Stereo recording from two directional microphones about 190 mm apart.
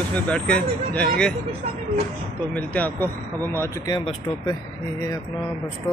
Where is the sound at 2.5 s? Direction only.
10° left (ahead or behind).